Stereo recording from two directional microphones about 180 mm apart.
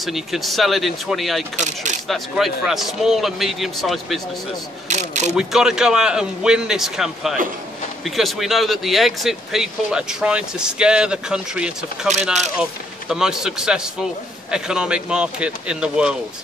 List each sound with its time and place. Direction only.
0.0 s speech: centre (ahead or behind)
4.8 s speech: 40° right (ahead or behind)
5.3 s speech: 5° right (ahead or behind)
13.1 s speech: 5° right (ahead or behind)